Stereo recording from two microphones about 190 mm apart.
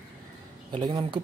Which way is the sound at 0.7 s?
25° right (ahead or behind).